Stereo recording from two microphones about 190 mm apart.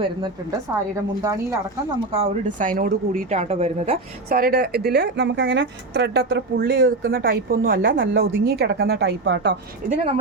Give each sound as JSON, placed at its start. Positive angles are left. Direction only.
{"t": 1.2, "sound": "speech", "side_deg": -15}
{"t": 2.1, "sound": "speech", "side_deg": -40}
{"t": 4.3, "sound": "a woman's voice", "side_deg": -50}
{"t": 7.9, "sound": "a woman's voice", "side_deg": -60}
{"t": 9.9, "sound": "speech", "side_deg": -35}